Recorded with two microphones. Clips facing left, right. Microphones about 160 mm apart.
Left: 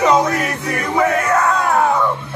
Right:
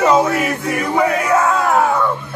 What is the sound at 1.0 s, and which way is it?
Crowd, 5° right (ahead or behind).